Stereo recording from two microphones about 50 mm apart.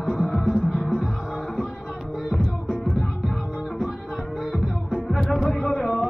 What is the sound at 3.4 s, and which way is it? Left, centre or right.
Music, centre.